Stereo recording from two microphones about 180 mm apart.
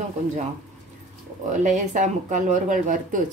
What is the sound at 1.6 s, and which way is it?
Speech, 45° right (ahead or behind).